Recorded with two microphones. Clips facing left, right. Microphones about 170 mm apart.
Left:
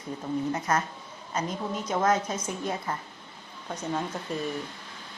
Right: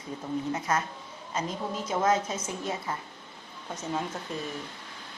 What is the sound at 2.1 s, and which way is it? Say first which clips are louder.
Speech: even; 25° right (ahead or behind).